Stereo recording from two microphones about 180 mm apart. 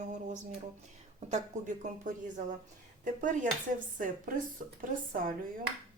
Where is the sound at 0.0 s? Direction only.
40° right (ahead or behind).